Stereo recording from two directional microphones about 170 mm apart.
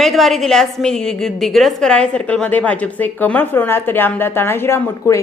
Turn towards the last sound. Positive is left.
turn(degrees=15)  # may be behind; listen again after turning